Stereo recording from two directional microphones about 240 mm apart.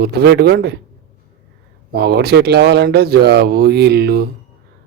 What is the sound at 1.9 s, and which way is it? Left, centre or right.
Speech, right.